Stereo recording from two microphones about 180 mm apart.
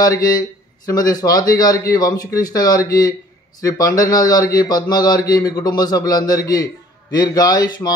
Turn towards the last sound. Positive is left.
turn(degrees=25)  # may be behind; listen again after turning